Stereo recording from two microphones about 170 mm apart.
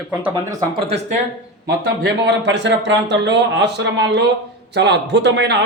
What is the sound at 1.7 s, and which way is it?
Speech, 80° right.